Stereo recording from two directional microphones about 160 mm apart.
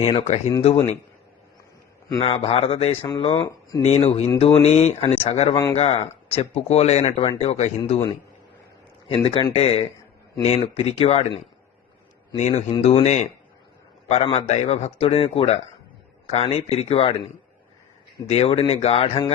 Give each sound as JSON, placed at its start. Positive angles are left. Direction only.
{"t": 0.0, "sound": "speech", "side_deg": 35}
{"t": 2.2, "sound": "speech", "side_deg": 35}
{"t": 3.8, "sound": "speech", "side_deg": 40}
{"t": 9.0, "sound": "speech", "side_deg": 35}
{"t": 12.4, "sound": "speech", "side_deg": 45}
{"t": 18.3, "sound": "speech", "side_deg": 35}